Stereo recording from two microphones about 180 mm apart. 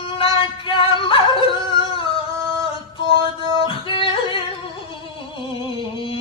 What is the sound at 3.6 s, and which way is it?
Yodeling, 30° left (ahead or behind).